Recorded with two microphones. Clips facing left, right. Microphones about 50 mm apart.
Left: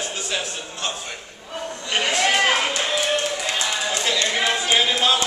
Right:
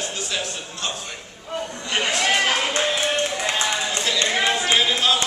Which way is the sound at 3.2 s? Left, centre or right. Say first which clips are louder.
Right 1 dB; right.